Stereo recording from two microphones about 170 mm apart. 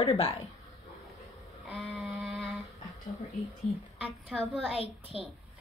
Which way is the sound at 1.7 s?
Centre (ahead or behind).